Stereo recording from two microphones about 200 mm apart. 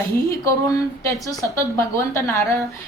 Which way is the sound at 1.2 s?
15° left (ahead or behind).